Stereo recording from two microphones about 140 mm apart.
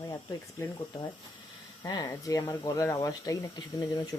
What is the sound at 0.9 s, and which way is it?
Speech, 25° left (ahead or behind).